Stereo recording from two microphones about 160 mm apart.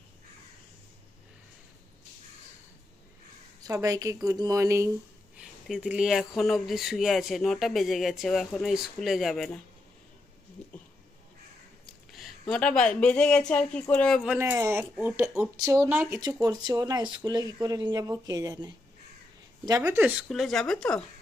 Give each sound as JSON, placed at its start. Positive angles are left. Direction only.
{"t": 3.6, "sound": "speech", "side_deg": -20}
{"t": 5.4, "sound": "speech", "side_deg": 0}
{"t": 10.6, "sound": "a sound", "side_deg": 5}
{"t": 12.1, "sound": "speech", "side_deg": 5}
{"t": 14.3, "sound": "speech", "side_deg": -15}
{"t": 20.2, "sound": "speech", "side_deg": 0}